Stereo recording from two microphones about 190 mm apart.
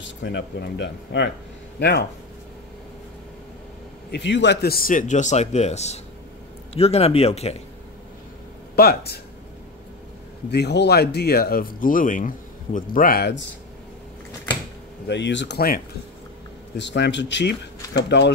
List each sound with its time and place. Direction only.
0.0 s speech: 70° left (ahead or behind)
4.1 s speech: 70° left (ahead or behind); by 7.5 s 35° left (ahead or behind)
8.7 s speech: 55° left (ahead or behind)
10.5 s speech: 60° left (ahead or behind)
15.0 s speech: 70° left (ahead or behind)
16.7 s speech: 65° left (ahead or behind)